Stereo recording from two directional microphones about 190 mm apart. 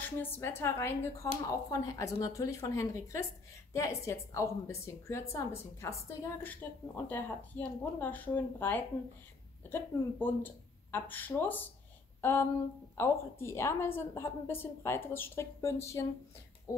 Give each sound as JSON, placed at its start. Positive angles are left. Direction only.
{"t": 0.2, "sound": "a woman's voice", "side_deg": 10}
{"t": 12.2, "sound": "a sound", "side_deg": 10}
{"t": 12.9, "sound": "a woman's voice", "side_deg": 15}